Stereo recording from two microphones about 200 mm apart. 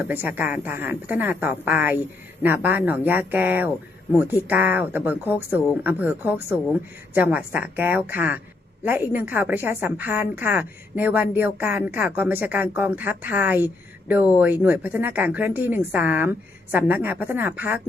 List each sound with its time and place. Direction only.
0.1 s a woman's voice: 10° right (ahead or behind)